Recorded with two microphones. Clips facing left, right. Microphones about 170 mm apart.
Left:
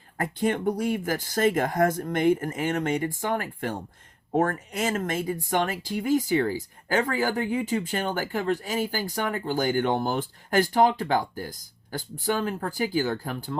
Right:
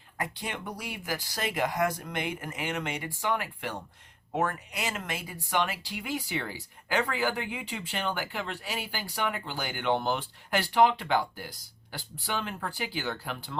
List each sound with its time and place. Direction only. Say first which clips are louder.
0.2 s speech: left 10 dB; 50° left (ahead or behind)